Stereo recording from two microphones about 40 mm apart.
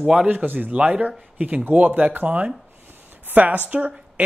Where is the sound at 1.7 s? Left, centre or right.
Right.